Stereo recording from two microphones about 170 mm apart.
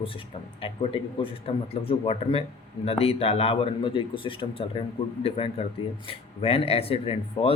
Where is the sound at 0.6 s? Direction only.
35° left (ahead or behind).